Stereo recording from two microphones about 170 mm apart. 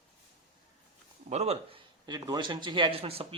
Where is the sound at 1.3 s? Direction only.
40° right (ahead or behind).